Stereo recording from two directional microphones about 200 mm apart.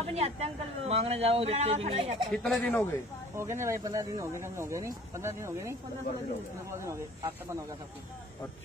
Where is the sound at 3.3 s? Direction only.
15° right (ahead or behind).